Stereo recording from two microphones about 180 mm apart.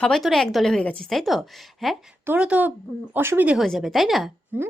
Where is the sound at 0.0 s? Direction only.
Centre (ahead or behind).